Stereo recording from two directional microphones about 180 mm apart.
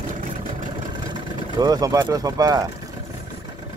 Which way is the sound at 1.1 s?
20° right (ahead or behind).